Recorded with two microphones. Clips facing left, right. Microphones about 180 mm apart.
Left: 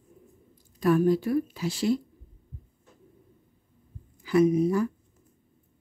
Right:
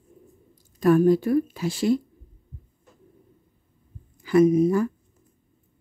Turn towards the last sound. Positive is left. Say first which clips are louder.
# right 4 dB
turn(degrees=-50)  # may be behind; listen again after turning